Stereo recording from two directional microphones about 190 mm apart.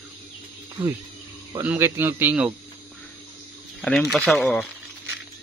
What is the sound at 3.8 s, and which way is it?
Speech, centre (ahead or behind).